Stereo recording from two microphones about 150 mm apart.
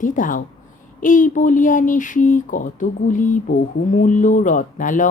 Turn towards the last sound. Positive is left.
turn(degrees=60)  # may be behind; listen again after turning